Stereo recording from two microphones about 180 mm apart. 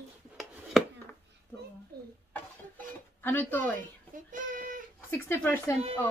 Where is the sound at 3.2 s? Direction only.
10° left (ahead or behind).